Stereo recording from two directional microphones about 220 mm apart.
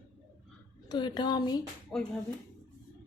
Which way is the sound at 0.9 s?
20° left (ahead or behind).